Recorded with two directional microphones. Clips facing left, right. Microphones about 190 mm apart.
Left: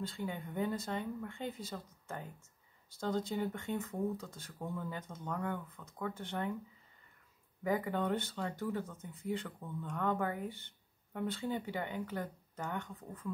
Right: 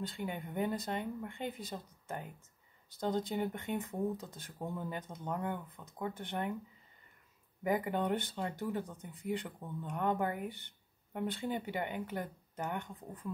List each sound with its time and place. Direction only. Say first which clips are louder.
0.0 s speech: even; 20° right (ahead or behind)
7.6 s speech: right 1 dB; 15° right (ahead or behind)